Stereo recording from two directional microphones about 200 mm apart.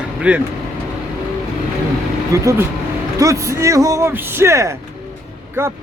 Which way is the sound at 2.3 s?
15° right (ahead or behind).